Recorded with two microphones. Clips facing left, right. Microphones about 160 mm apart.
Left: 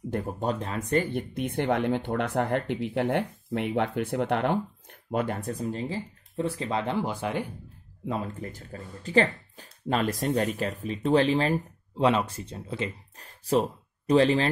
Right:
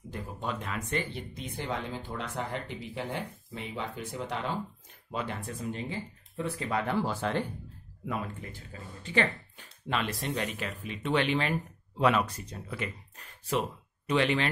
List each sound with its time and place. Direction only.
0.1 s speech: 55° left (ahead or behind)
0.5 s speech: 35° left (ahead or behind); by 4.6 s 65° left (ahead or behind)
5.1 s speech: 45° left (ahead or behind); by 7.5 s 10° left (ahead or behind)
8.1 s speech: 35° left (ahead or behind)